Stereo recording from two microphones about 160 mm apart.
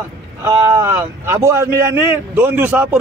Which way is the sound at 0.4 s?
15° right (ahead or behind).